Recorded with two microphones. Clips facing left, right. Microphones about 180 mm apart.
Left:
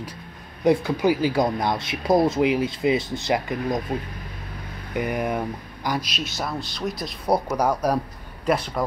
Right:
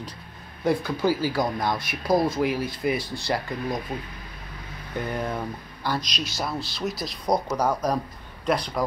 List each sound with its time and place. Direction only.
0.7 s speech: 20° left (ahead or behind)
4.9 s speech: 15° left (ahead or behind)